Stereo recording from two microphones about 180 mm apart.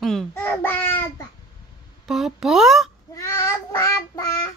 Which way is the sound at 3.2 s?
15° left (ahead or behind).